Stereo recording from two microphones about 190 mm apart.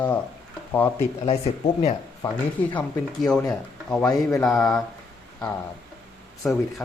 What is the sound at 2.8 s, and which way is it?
Speech, 5° left (ahead or behind).